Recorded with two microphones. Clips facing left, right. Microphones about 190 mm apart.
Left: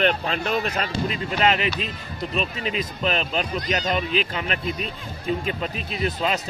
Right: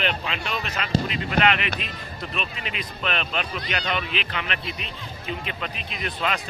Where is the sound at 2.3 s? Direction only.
35° left (ahead or behind).